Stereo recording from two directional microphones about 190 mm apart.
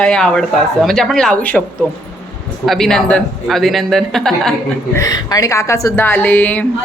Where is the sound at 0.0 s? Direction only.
5° left (ahead or behind).